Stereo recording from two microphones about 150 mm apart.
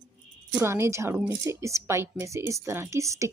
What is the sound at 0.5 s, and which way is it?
A woman's voice, 15° right (ahead or behind).